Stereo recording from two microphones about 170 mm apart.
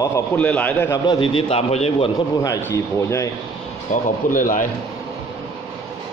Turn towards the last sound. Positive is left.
turn(degrees=50)  # may be behind; listen again after turning